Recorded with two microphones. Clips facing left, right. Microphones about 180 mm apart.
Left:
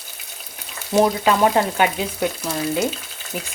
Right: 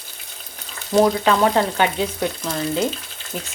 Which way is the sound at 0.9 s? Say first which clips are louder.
Right 1 dB; 10° left (ahead or behind).